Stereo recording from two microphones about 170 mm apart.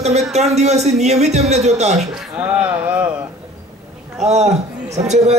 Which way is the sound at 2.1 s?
5° right (ahead or behind).